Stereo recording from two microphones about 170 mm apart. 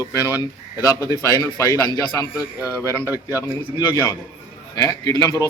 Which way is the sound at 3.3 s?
20° left (ahead or behind).